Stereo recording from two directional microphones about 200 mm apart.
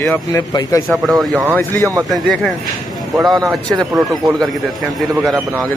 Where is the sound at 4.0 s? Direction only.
Centre (ahead or behind).